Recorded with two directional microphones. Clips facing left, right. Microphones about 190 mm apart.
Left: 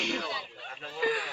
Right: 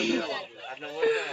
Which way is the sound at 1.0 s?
55° right (ahead or behind).